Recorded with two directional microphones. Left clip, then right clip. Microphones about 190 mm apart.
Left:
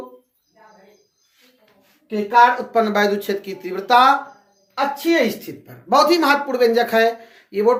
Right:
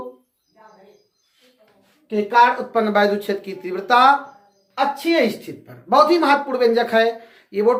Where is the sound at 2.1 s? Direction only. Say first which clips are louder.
Left 1 dB; 5° left (ahead or behind).